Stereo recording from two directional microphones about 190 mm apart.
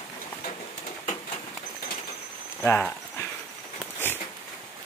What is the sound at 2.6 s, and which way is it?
Horse, 10° left (ahead or behind).